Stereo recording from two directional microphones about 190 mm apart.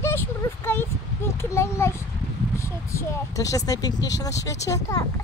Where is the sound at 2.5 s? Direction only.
15° left (ahead or behind).